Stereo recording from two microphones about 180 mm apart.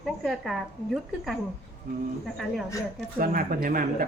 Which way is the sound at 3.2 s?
50° right (ahead or behind).